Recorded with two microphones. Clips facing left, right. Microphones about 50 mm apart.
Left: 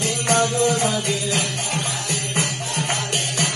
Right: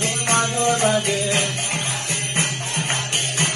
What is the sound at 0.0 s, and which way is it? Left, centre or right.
Music, right.